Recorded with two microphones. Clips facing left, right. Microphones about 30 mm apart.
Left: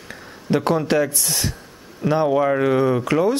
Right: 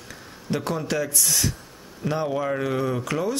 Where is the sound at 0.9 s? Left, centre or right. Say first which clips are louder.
Left 5 dB; left.